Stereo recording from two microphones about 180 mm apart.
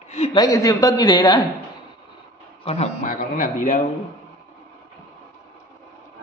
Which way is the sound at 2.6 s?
35° left (ahead or behind).